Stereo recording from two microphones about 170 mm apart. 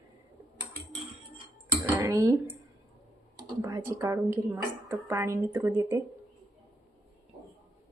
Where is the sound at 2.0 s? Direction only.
20° right (ahead or behind).